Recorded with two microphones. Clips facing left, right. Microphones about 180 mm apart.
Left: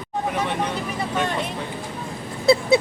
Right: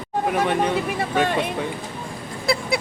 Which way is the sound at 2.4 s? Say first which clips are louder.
Left 7 dB; 25° left (ahead or behind).